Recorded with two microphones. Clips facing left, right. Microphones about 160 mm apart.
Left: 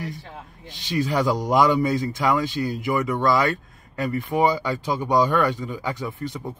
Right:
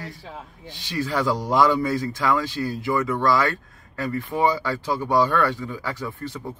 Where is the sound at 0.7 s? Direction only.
20° left (ahead or behind).